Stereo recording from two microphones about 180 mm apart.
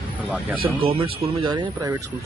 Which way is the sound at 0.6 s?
30° right (ahead or behind).